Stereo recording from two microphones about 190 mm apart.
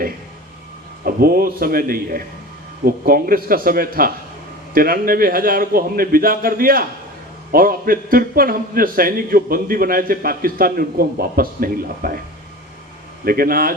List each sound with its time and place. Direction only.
1.0 s a man's voice: 50° right (ahead or behind)
13.2 s a man's voice: 50° right (ahead or behind)